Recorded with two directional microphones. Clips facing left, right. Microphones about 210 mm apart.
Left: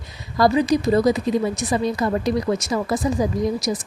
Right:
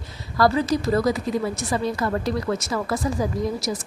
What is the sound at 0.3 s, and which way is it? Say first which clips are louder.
A woman's voice: left 3 dB; 15° left (ahead or behind).